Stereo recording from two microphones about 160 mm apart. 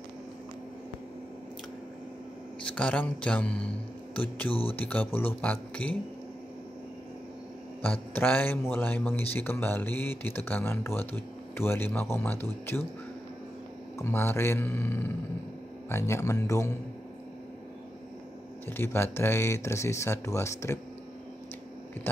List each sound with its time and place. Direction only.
2.6 s speech: 5° left (ahead or behind)
4.5 s speech: 35° left (ahead or behind)
4.7 s a man's voice: 10° left (ahead or behind)
7.8 s a man's voice: 10° left (ahead or behind)
13.9 s a man's voice: 15° left (ahead or behind)
18.7 s a man's voice: 15° left (ahead or behind)
22.1 s a man's voice: 15° left (ahead or behind)